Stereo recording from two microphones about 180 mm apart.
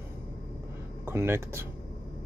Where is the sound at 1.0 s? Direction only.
15° right (ahead or behind).